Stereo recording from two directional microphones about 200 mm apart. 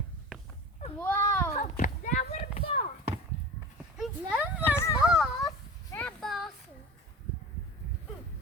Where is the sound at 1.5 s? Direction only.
40° left (ahead or behind).